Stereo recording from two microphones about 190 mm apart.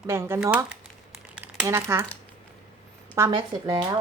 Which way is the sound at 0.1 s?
15° right (ahead or behind).